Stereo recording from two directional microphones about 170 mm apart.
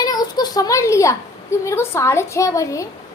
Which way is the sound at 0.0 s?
25° left (ahead or behind).